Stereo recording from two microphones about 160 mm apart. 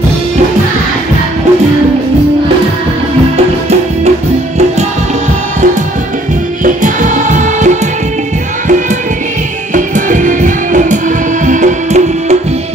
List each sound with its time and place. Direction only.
6.6 s music: 50° right (ahead or behind)
9.8 s music: 55° right (ahead or behind)